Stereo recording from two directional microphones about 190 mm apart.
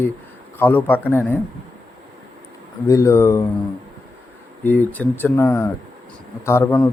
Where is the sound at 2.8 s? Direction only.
15° left (ahead or behind).